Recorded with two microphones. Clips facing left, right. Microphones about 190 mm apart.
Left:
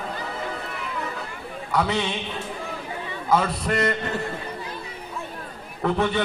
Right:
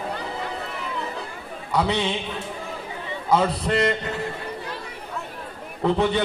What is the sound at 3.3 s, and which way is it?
Speech, 20° right (ahead or behind).